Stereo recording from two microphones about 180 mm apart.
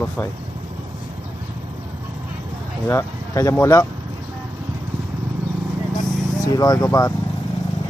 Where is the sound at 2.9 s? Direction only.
15° left (ahead or behind).